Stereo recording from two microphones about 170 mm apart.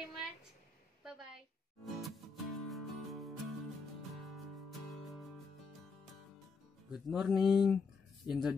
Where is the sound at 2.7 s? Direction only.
Centre (ahead or behind).